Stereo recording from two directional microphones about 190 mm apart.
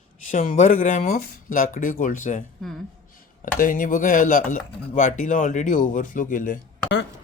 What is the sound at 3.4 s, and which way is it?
Speech, 45° left (ahead or behind).